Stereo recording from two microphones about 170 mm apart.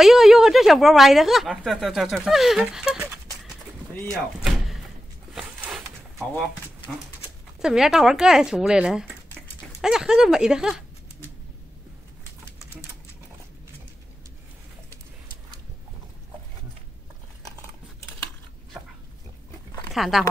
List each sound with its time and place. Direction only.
0.0 s speech: centre (ahead or behind)
4.1 s door: centre (ahead or behind)
5.3 s a sound: 5° right (ahead or behind)
7.6 s speech: 5° right (ahead or behind)
19.9 s speech: centre (ahead or behind)